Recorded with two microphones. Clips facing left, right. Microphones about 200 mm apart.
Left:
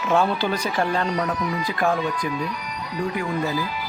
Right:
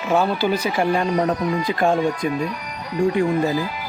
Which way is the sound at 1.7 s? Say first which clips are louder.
Right 4 dB; 25° right (ahead or behind).